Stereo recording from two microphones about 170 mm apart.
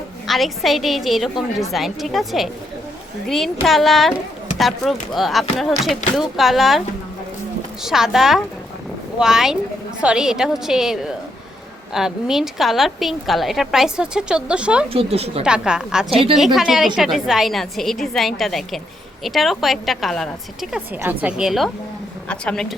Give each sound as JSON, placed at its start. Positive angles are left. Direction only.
{"t": 0.3, "sound": "a woman's voice", "side_deg": 0}
{"t": 7.9, "sound": "a woman's voice", "side_deg": 0}
{"t": 14.9, "sound": "speech", "side_deg": -35}
{"t": 15.4, "sound": "a woman's voice", "side_deg": -5}
{"t": 21.0, "sound": "a woman's voice", "side_deg": -10}